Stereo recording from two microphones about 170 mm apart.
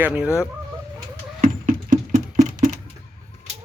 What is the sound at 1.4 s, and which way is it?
Music, 50° right (ahead or behind).